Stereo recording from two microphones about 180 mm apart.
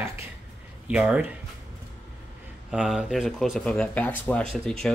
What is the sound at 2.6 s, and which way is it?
Speech, 5° right (ahead or behind).